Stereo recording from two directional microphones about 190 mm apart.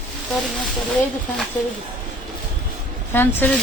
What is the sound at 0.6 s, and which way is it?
Speech, 5° left (ahead or behind).